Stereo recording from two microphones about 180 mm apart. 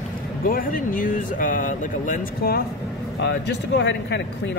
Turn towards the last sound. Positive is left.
turn(degrees=75)  # may be behind; listen again after turning